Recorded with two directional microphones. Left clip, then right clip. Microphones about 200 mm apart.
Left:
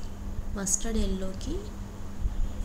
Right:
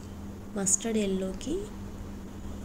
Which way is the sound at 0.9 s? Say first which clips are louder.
Right 4 dB; 5° right (ahead or behind).